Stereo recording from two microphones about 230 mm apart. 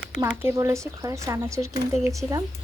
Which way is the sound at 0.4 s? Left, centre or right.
Centre.